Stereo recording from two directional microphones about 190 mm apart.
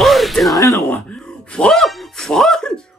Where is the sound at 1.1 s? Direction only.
5° left (ahead or behind).